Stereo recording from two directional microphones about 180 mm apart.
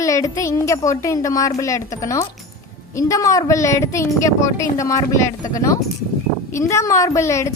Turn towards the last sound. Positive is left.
turn(degrees=15)  # may be behind; listen again after turning